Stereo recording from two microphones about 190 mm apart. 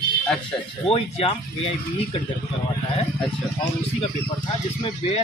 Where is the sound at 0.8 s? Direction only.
30° left (ahead or behind).